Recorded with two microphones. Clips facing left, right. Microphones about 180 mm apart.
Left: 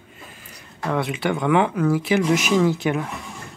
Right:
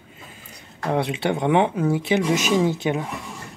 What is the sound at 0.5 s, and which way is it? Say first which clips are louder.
Speech: right 1 dB; 30° right (ahead or behind).